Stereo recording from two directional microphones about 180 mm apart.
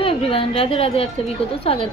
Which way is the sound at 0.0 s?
30° left (ahead or behind).